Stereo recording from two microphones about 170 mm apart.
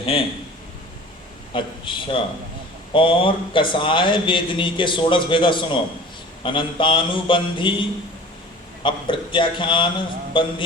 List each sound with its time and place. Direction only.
0.0 s a man's voice: 35° left (ahead or behind)
1.5 s a man's voice: 30° left (ahead or behind)
8.8 s a man's voice: 30° left (ahead or behind)